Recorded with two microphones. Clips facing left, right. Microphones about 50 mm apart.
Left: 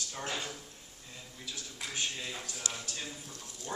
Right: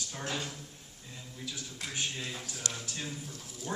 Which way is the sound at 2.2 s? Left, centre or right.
Centre.